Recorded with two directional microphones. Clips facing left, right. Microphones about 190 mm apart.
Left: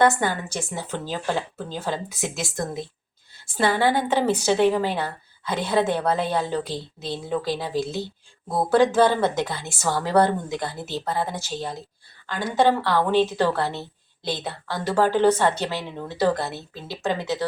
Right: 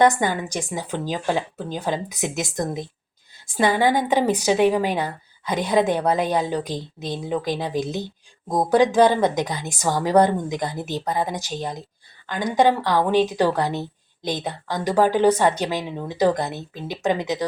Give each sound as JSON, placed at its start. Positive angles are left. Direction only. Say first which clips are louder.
{"t": 0.0, "sound": "a woman's voice", "louder": "right 2 dB", "side_deg": -15}